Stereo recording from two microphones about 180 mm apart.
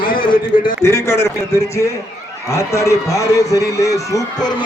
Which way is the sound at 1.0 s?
15° left (ahead or behind).